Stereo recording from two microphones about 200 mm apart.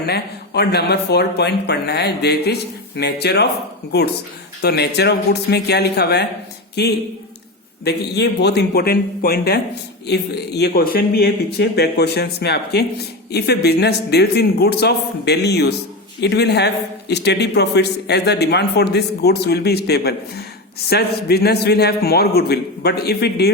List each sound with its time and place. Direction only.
0.0 s a man's voice: 55° left (ahead or behind)
4.6 s a man's voice: 55° left (ahead or behind)